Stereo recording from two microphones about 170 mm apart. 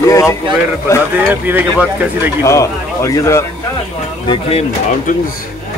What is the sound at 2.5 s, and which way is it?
Speech, 20° left (ahead or behind).